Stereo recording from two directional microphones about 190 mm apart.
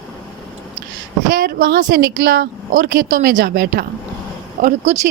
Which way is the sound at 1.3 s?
50° right (ahead or behind).